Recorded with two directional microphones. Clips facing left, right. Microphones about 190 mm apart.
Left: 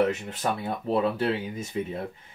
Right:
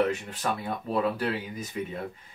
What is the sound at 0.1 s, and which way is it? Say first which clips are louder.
Speech: left 1 dB; 25° left (ahead or behind).